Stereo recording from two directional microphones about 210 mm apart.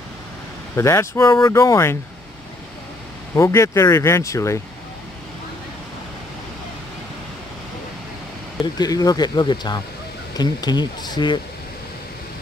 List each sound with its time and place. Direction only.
0.7 s speech: 15° left (ahead or behind)
3.3 s speech: 15° left (ahead or behind)
8.7 s speech: 20° left (ahead or behind)